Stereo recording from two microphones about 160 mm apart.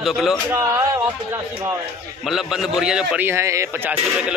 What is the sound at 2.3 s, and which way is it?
Speech, centre (ahead or behind).